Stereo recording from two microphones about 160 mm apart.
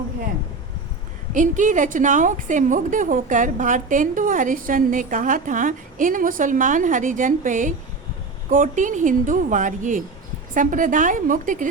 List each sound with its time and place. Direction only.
1.3 s a woman's voice: 50° right (ahead or behind)